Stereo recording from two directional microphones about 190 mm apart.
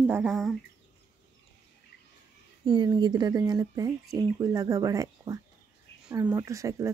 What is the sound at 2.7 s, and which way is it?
Speech, 25° right (ahead or behind).